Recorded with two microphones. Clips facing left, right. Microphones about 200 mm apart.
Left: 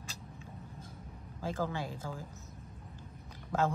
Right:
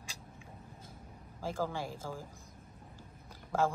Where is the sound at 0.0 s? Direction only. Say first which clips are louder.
Left 3 dB; 15° right (ahead or behind).